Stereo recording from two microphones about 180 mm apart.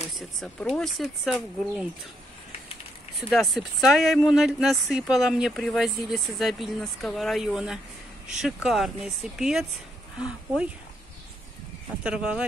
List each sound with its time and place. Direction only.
0.2 s speech: centre (ahead or behind)
3.2 s speech: centre (ahead or behind)
12.0 s speech: 5° right (ahead or behind)